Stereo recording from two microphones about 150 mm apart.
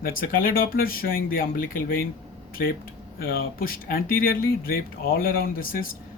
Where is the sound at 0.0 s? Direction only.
75° left (ahead or behind).